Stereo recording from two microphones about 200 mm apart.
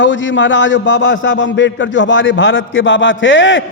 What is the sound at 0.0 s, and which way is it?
A man's voice, 65° left (ahead or behind).